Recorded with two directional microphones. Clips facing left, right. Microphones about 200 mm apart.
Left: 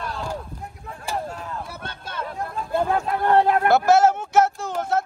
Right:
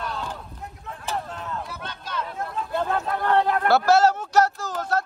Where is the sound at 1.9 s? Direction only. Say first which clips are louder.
Right 1 dB; 55° left (ahead or behind).